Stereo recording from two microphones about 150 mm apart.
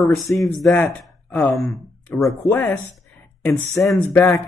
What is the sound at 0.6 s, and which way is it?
Speech, 5° left (ahead or behind).